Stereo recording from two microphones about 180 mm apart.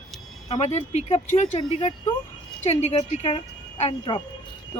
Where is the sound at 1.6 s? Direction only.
25° left (ahead or behind).